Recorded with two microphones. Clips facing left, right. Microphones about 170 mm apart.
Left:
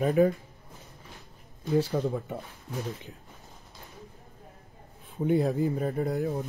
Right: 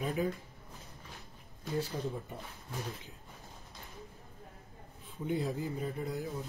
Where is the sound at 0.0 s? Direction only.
55° left (ahead or behind).